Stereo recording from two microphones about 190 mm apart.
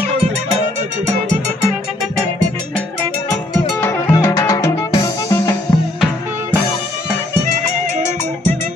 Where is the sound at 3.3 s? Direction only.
15° left (ahead or behind).